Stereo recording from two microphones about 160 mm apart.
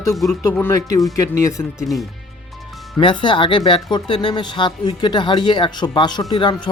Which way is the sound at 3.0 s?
30° left (ahead or behind).